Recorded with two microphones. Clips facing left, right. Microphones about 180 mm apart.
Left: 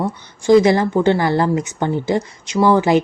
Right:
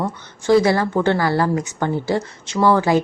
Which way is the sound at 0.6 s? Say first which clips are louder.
Left 3 dB; 20° left (ahead or behind).